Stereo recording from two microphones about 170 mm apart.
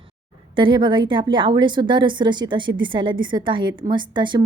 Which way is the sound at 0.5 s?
30° right (ahead or behind).